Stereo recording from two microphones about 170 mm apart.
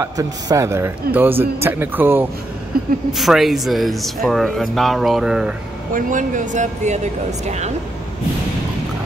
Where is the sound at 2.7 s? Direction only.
60° right (ahead or behind).